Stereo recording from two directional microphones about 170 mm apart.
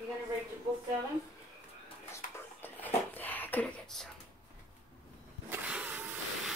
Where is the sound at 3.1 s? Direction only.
10° left (ahead or behind).